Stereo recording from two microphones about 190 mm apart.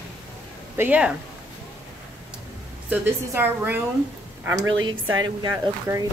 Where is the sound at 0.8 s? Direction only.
5° right (ahead or behind).